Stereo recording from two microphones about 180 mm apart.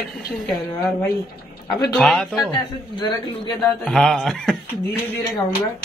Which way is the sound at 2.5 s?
25° left (ahead or behind).